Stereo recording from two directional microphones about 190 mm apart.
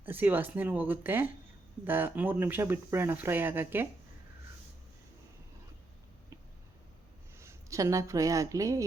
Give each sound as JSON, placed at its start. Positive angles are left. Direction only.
{"t": 0.0, "sound": "speech", "side_deg": -10}
{"t": 7.3, "sound": "a woman's voice", "side_deg": -15}